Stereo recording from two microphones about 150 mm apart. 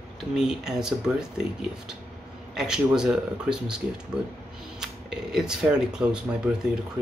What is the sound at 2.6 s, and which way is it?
Speech, 5° right (ahead or behind).